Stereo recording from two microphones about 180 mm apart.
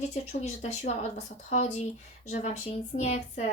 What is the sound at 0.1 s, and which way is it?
Speech, 40° left (ahead or behind).